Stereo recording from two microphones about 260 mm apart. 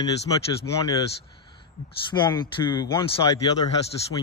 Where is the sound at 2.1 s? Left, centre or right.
Centre.